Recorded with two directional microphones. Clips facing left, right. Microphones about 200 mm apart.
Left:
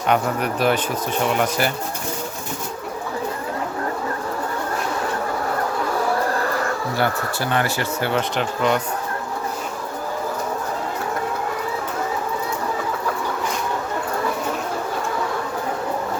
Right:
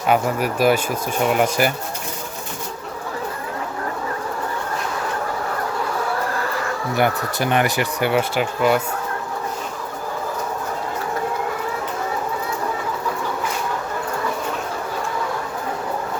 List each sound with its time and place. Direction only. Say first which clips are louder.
0.1 s speech: right 2 dB; 5° right (ahead or behind)
6.9 s speech: right 6 dB; 15° right (ahead or behind)